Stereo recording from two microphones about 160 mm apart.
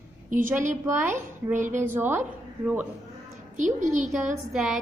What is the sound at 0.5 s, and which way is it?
A woman's voice, 15° right (ahead or behind).